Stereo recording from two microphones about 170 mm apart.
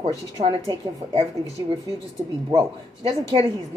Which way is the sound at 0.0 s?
35° right (ahead or behind).